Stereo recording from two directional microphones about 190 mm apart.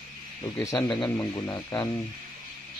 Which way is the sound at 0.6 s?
20° left (ahead or behind).